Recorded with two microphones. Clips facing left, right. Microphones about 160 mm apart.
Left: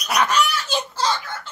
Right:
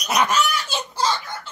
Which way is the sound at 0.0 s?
20° right (ahead or behind).